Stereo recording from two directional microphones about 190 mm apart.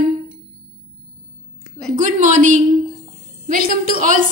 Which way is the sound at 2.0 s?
40° right (ahead or behind).